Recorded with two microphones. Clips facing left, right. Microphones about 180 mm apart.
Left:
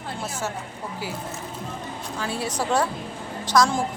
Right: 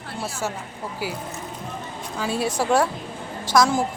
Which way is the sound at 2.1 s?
15° right (ahead or behind).